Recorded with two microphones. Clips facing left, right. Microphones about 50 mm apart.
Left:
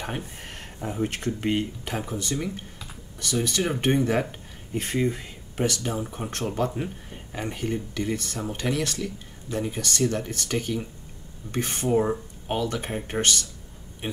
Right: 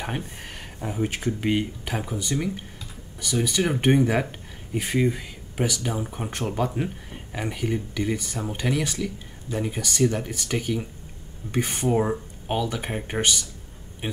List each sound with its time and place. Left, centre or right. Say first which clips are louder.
0.7 s speech: right 1 dB; centre